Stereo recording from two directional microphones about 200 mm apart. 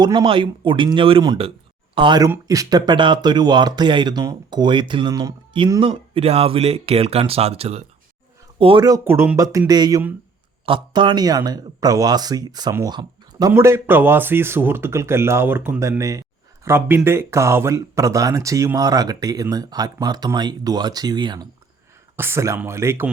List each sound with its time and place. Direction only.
0.0 s speech: 25° right (ahead or behind)